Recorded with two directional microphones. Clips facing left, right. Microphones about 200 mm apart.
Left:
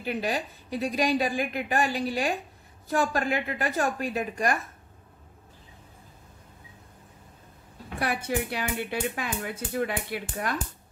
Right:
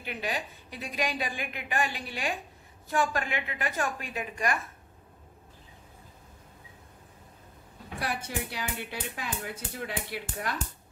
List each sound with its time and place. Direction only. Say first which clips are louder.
0.0 s a woman's voice: left 5 dB; 40° left (ahead or behind)
8.0 s speech: left 6 dB; 60° left (ahead or behind)